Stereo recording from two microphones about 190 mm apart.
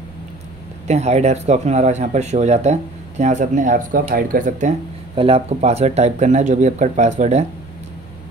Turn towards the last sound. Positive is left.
turn(degrees=-35)  # may be behind; listen again after turning